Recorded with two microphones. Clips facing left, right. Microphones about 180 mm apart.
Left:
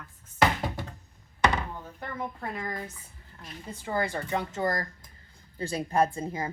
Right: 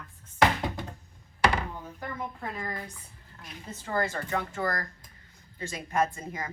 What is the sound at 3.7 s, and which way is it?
Speech, 10° left (ahead or behind).